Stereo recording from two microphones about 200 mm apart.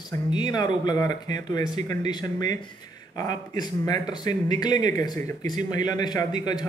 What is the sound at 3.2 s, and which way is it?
A man's voice, 20° left (ahead or behind).